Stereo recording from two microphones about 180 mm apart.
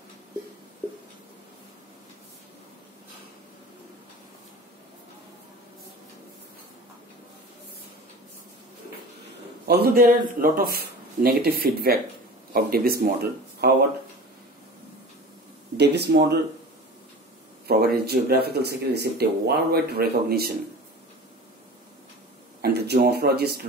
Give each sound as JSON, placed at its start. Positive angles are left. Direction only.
{"t": 9.7, "sound": "speech", "side_deg": -60}
{"t": 15.8, "sound": "speech", "side_deg": -65}
{"t": 17.6, "sound": "speech", "side_deg": -60}
{"t": 22.6, "sound": "speech", "side_deg": -65}